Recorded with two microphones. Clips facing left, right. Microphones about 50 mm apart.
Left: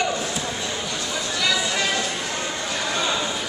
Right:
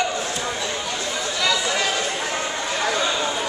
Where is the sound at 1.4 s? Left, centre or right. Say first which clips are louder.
Right 1 dB; centre.